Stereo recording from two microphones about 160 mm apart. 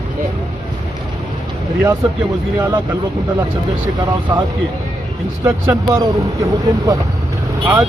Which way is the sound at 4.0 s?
30° right (ahead or behind).